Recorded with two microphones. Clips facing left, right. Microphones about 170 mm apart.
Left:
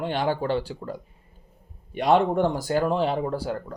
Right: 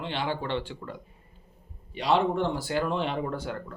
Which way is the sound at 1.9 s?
50° left (ahead or behind).